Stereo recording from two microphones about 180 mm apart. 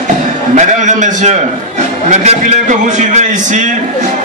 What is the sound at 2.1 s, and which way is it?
A man's voice, 40° right (ahead or behind).